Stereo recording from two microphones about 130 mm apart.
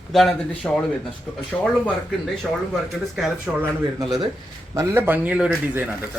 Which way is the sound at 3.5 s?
5° right (ahead or behind).